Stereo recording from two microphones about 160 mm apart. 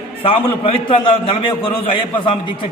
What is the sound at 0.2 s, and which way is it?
A man's voice, 35° left (ahead or behind).